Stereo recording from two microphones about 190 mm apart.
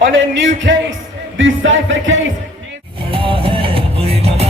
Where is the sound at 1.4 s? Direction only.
90° right.